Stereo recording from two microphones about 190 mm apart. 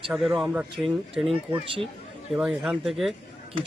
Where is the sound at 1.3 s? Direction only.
30° right (ahead or behind).